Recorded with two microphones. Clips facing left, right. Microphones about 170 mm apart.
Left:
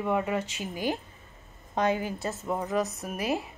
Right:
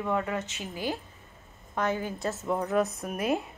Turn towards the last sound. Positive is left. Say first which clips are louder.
# right 1 dB
turn(degrees=5)  # may be behind; listen again after turning